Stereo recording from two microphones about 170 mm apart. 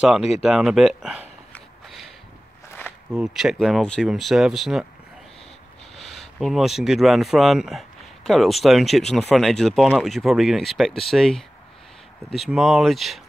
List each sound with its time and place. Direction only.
0.0 s speech: 5° right (ahead or behind)
1.5 s a sound: centre (ahead or behind)
3.3 s speech: centre (ahead or behind)
5.9 s speech: centre (ahead or behind)